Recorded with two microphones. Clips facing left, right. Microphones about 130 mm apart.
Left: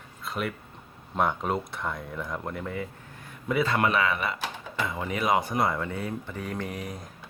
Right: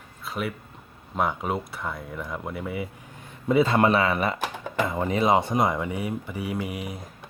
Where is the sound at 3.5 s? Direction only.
25° right (ahead or behind); by 7.0 s 10° right (ahead or behind).